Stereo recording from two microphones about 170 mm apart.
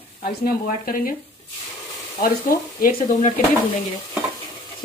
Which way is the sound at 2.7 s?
55° left (ahead or behind).